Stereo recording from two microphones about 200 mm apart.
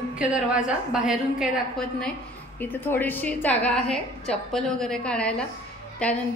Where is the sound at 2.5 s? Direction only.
10° left (ahead or behind).